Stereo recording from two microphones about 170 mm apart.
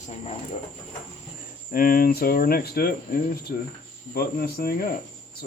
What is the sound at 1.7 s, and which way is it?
Speech, 55° left (ahead or behind).